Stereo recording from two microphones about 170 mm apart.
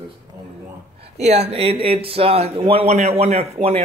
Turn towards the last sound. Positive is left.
turn(degrees=-40)  # may be behind; listen again after turning